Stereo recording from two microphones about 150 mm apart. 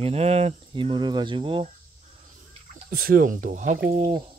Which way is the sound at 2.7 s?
75° right (ahead or behind).